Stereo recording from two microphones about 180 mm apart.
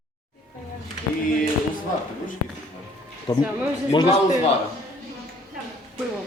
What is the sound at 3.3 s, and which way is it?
Speech, 20° left (ahead or behind).